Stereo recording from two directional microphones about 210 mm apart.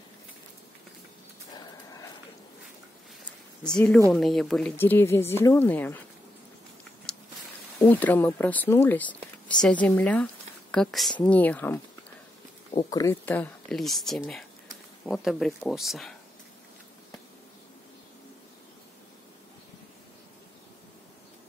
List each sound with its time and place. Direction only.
1.5 s horse: 15° left (ahead or behind)
3.6 s speech: 5° left (ahead or behind)
7.8 s speech: 10° left (ahead or behind)
12.9 s speech: 10° left (ahead or behind)